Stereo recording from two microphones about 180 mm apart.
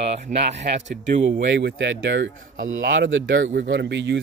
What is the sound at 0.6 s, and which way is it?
Speech, 40° right (ahead or behind).